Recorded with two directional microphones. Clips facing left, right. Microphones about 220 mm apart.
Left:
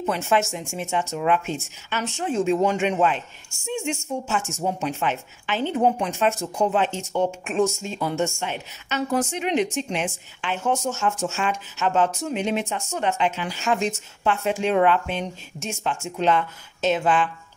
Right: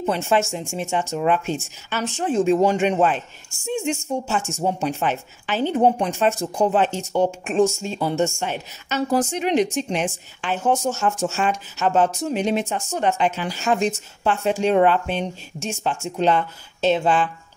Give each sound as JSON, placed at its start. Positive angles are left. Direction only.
{"t": 0.0, "sound": "a woman's voice", "side_deg": -30}